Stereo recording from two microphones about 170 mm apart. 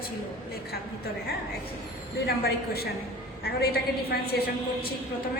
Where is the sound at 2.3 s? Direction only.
65° left (ahead or behind).